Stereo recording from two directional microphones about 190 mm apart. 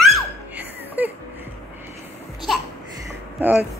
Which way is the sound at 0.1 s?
10° right (ahead or behind).